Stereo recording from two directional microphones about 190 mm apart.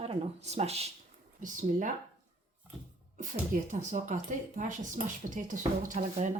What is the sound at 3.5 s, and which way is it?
Speech, 40° right (ahead or behind).